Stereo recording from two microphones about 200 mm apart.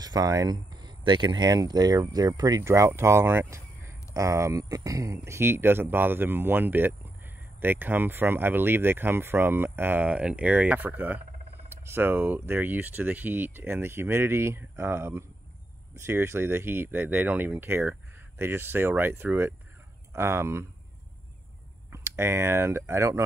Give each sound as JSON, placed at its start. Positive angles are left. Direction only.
{"t": 0.0, "sound": "speech", "side_deg": -20}
{"t": 21.9, "sound": "speech", "side_deg": -15}